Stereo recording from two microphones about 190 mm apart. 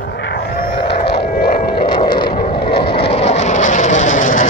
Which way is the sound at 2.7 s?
30° left (ahead or behind).